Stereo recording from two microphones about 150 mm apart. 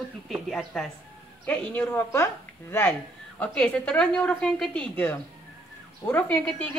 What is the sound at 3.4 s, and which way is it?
A woman's voice, 10° left (ahead or behind).